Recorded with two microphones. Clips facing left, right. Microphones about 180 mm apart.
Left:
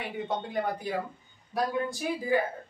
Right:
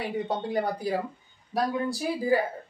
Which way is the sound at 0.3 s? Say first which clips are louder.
Even; 35° right (ahead or behind).